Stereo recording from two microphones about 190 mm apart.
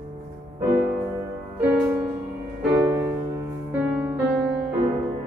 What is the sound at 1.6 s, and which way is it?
Music, 10° right (ahead or behind).